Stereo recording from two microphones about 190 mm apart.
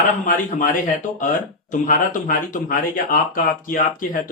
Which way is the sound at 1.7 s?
45° left (ahead or behind).